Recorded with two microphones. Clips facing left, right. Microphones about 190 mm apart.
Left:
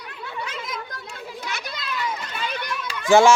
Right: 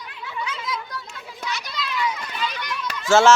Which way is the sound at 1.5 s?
55° left (ahead or behind).